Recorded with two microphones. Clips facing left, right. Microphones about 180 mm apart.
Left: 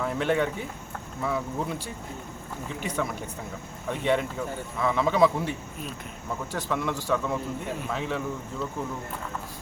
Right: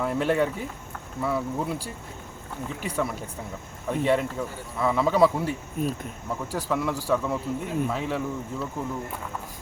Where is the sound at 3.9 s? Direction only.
5° right (ahead or behind).